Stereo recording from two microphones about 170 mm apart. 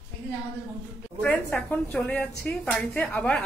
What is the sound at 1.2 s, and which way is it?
A woman's voice, 5° left (ahead or behind).